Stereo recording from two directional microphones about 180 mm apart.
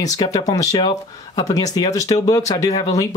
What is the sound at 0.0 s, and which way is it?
Speech, 20° left (ahead or behind).